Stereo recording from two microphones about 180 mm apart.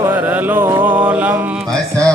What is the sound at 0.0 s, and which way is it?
Music, 10° right (ahead or behind).